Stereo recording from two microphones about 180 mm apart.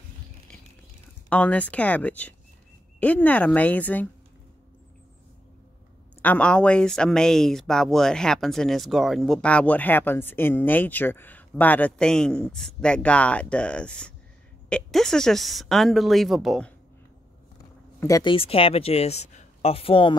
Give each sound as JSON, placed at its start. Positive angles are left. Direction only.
{"t": 1.3, "sound": "speech", "side_deg": 5}
{"t": 6.2, "sound": "speech", "side_deg": 5}
{"t": 18.0, "sound": "speech", "side_deg": 20}